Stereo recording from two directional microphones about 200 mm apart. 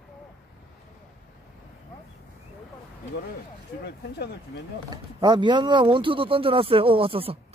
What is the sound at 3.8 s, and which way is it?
Speech, 55° left (ahead or behind).